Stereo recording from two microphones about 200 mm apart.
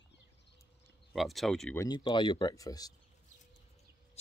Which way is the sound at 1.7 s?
15° left (ahead or behind).